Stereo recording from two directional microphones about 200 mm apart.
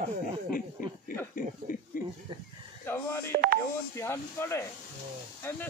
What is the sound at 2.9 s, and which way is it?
Telephone dialing, 10° left (ahead or behind).